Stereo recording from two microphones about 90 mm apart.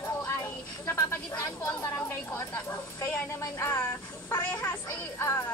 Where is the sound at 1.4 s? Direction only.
30° left (ahead or behind).